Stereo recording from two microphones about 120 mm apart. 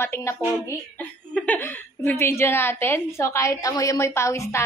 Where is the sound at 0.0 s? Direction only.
20° left (ahead or behind).